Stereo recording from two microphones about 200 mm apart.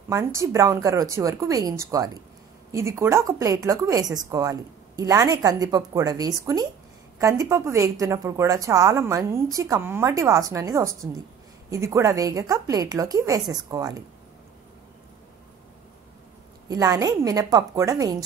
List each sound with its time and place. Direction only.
0.1 s a woman's voice: 15° right (ahead or behind)
16.6 s a woman's voice: 20° right (ahead or behind)